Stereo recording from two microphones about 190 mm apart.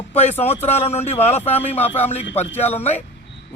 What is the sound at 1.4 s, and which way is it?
Speech, 10° left (ahead or behind).